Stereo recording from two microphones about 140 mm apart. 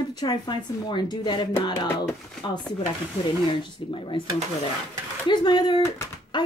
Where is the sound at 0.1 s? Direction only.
30° left (ahead or behind).